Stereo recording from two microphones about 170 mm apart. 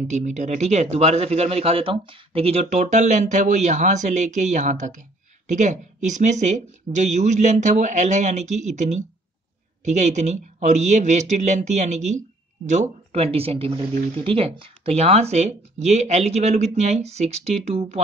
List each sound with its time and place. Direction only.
0.1 s speech: 45° right (ahead or behind)